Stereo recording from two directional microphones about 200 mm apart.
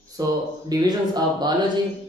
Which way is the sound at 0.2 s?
15° right (ahead or behind).